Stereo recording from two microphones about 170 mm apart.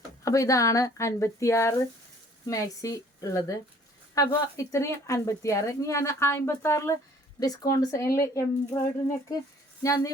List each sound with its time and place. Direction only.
0.3 s a woman's voice: 20° left (ahead or behind)
9.8 s speech: 20° left (ahead or behind)